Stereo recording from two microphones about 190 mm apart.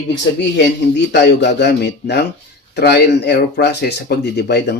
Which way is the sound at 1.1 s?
65° left (ahead or behind).